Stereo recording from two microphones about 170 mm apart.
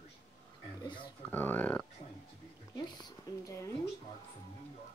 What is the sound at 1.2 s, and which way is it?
Speech, 10° left (ahead or behind).